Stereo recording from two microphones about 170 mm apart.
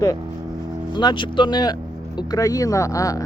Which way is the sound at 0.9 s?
25° left (ahead or behind).